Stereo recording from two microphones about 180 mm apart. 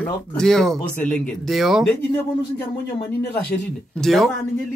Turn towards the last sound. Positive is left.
turn(degrees=0)  # may be behind; listen again after turning